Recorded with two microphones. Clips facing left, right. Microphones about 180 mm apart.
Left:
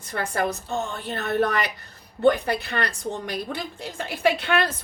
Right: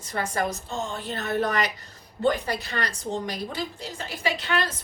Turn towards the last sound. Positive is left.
turn(degrees=60)  # may be behind; listen again after turning